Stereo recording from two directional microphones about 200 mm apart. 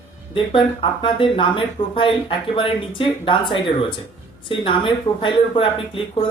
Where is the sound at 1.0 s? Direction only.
25° left (ahead or behind).